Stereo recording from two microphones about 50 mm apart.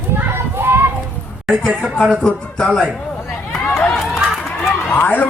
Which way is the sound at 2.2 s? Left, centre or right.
Centre.